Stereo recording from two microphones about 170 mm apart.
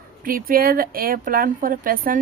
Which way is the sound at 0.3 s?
55° right (ahead or behind).